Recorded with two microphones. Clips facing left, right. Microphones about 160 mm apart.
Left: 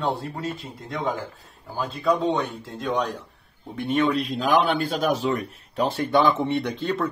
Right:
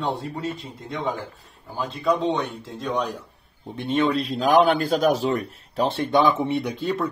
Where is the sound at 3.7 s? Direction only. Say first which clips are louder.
Even; 35° right (ahead or behind); by 7.0 s 10° right (ahead or behind).